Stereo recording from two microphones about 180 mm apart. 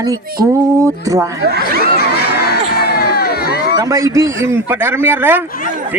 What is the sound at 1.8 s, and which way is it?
Crowd, 60° left (ahead or behind).